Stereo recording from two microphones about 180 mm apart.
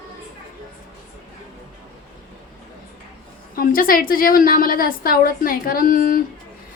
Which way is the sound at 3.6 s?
50° left (ahead or behind).